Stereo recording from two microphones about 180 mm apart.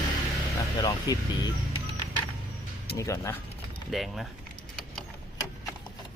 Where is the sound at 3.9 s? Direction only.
Centre (ahead or behind).